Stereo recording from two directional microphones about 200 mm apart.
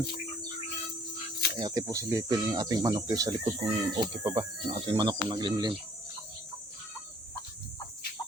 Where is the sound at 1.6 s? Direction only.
20° right (ahead or behind).